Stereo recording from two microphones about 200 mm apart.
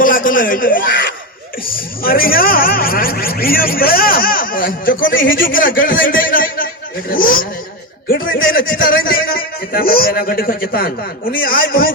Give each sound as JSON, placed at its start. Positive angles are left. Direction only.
{"t": 0.0, "sound": "a sound", "side_deg": 45}
{"t": 2.0, "sound": "a man's voice", "side_deg": 45}
{"t": 5.0, "sound": "a man's voice", "side_deg": 70}
{"t": 5.3, "sound": "a man's voice", "side_deg": 45}
{"t": 8.6, "sound": "a man's voice", "side_deg": 45}